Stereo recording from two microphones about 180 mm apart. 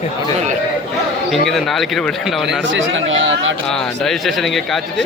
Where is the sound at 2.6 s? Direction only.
90° right.